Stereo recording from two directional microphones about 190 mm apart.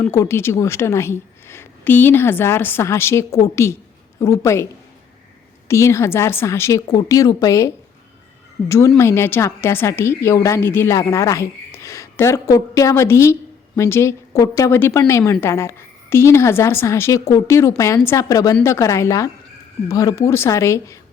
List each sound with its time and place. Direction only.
0.0 s a woman's voice: 15° left (ahead or behind)
5.6 s a woman's voice: 15° left (ahead or behind)
9.0 s a woman's voice: 15° left (ahead or behind)